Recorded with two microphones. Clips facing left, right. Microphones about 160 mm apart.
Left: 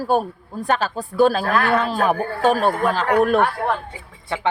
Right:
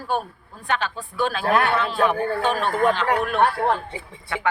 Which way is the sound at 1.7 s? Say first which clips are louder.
Left 2 dB; 40° left (ahead or behind).